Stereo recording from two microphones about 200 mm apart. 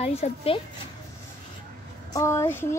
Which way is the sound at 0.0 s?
30° left (ahead or behind).